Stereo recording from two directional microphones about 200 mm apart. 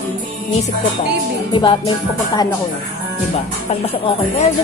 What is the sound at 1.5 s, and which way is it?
Speech, 25° left (ahead or behind).